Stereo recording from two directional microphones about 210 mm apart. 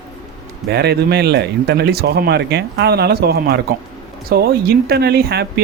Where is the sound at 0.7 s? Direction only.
50° right (ahead or behind).